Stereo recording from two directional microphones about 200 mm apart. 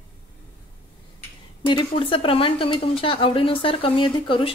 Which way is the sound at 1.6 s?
25° left (ahead or behind).